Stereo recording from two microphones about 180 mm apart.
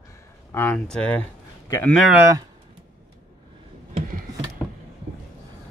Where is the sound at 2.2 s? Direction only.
15° right (ahead or behind).